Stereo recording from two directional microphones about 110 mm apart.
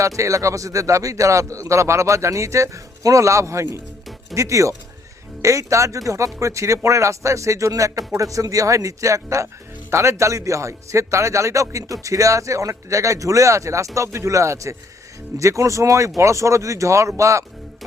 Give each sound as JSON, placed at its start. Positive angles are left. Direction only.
{"t": 0.2, "sound": "speech", "side_deg": -30}